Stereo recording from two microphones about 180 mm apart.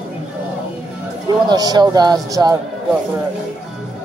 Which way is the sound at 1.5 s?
20° right (ahead or behind).